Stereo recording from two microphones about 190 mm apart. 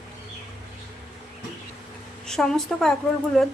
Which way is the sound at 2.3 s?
Centre (ahead or behind).